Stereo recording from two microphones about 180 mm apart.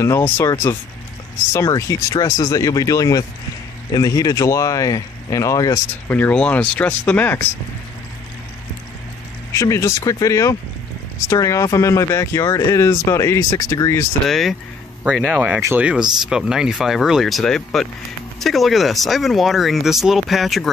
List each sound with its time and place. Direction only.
0.0 s speech: 15° left (ahead or behind)
9.5 s speech: 15° left (ahead or behind)
15.0 s speech: 5° right (ahead or behind)